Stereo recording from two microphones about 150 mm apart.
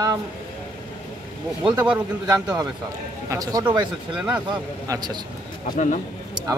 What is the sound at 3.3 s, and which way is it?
Speech, 25° right (ahead or behind).